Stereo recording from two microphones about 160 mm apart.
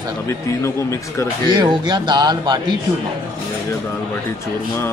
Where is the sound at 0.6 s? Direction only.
20° left (ahead or behind).